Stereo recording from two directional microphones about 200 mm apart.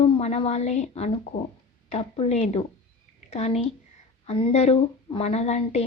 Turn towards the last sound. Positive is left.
turn(degrees=35)  # may be behind; listen again after turning